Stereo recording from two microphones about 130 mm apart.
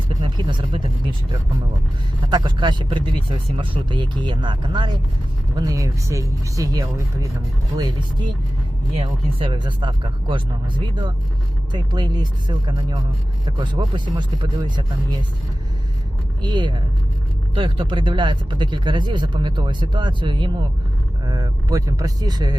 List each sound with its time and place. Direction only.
0.2 s speech: 40° right (ahead or behind)
2.2 s speech: 35° right (ahead or behind)
11.7 s speech: 35° right (ahead or behind)
16.4 s speech: 35° right (ahead or behind)